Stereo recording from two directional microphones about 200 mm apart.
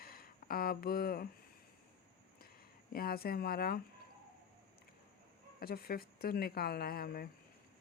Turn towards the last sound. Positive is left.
turn(degrees=50)  # may be behind; listen again after turning